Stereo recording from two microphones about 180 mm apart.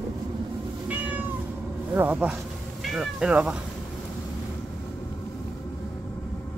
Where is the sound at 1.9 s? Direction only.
10° right (ahead or behind).